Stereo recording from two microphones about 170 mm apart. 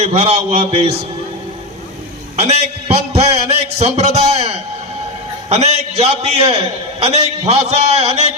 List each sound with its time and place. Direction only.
0.0 s a man's voice: 35° right (ahead or behind)
2.3 s a man's voice: 40° right (ahead or behind)